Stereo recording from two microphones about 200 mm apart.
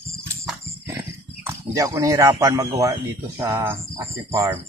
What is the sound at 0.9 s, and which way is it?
Speech, 15° right (ahead or behind).